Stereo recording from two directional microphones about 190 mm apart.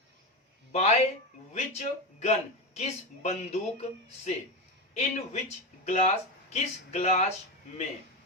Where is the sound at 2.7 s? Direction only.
35° left (ahead or behind).